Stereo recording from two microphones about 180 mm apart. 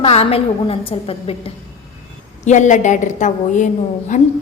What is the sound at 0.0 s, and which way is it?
A woman's voice, 35° left (ahead or behind).